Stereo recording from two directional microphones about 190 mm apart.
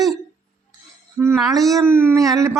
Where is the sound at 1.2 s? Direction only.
15° right (ahead or behind).